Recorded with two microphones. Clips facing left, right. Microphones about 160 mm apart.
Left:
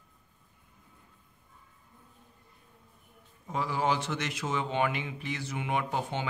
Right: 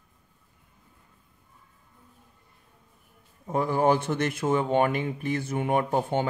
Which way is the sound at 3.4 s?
50° right (ahead or behind).